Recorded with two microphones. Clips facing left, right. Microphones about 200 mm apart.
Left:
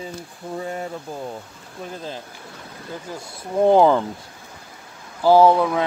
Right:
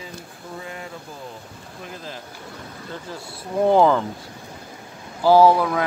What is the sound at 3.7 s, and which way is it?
Speech, 15° left (ahead or behind).